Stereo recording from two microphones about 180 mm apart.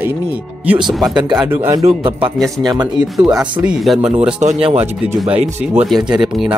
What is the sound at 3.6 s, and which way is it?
Speech, 5° right (ahead or behind).